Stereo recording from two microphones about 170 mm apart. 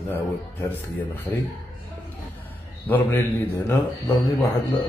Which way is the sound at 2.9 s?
10° left (ahead or behind).